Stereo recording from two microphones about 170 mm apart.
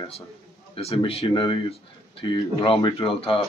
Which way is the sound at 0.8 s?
35° left (ahead or behind).